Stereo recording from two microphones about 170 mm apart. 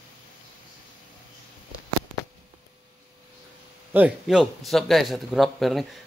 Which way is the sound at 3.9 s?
10° right (ahead or behind).